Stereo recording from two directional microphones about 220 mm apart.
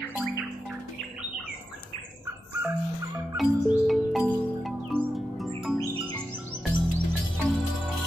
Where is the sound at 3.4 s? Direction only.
Centre (ahead or behind).